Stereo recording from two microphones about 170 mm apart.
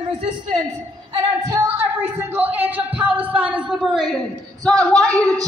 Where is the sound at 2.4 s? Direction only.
10° right (ahead or behind).